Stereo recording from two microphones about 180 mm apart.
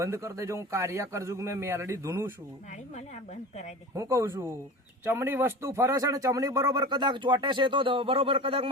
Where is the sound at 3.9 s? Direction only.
15° right (ahead or behind).